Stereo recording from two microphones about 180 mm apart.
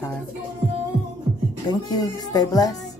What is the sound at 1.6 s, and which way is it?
Speech, 20° left (ahead or behind).